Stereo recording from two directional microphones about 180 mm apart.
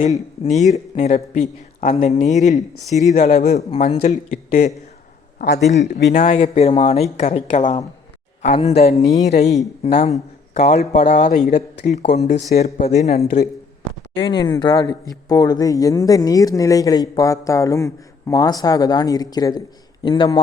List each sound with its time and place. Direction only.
0.4 s speech: 40° left (ahead or behind)
6.1 s speech: 45° left (ahead or behind)
6.3 s speech: 35° left (ahead or behind)
14.2 s speech: 25° left (ahead or behind)